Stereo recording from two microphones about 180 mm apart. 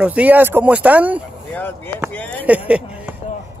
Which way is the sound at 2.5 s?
5° right (ahead or behind).